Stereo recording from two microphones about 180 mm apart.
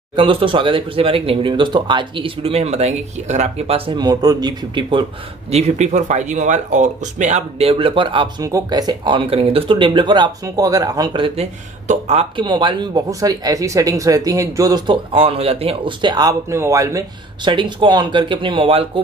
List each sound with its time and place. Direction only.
0.1 s speech: 30° right (ahead or behind)
5.5 s speech: 40° right (ahead or behind)